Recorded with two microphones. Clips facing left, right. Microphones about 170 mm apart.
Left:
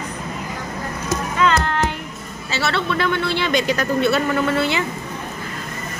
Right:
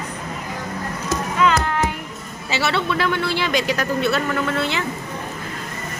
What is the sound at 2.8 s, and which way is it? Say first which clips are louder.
A man's voice: left 1 dB; 5° right (ahead or behind).